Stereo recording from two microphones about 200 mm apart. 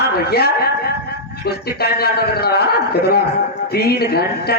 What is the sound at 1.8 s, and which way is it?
Speech, 50° left (ahead or behind).